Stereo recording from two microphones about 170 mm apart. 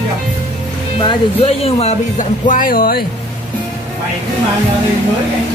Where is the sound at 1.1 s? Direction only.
35° left (ahead or behind); by 3.0 s 55° left (ahead or behind).